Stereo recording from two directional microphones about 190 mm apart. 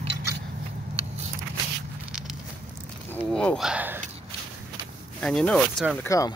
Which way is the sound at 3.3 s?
5° left (ahead or behind).